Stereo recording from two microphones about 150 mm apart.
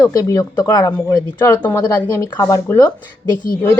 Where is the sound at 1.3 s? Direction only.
15° left (ahead or behind).